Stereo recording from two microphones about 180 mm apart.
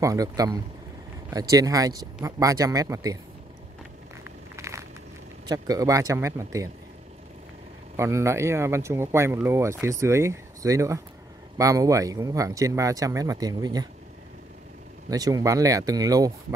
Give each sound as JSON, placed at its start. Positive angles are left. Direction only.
{"t": 0.0, "sound": "speech", "side_deg": -20}
{"t": 4.6, "sound": "a sound", "side_deg": -15}
{"t": 5.5, "sound": "speech", "side_deg": -20}
{"t": 7.9, "sound": "speech", "side_deg": -15}
{"t": 15.0, "sound": "speech", "side_deg": -20}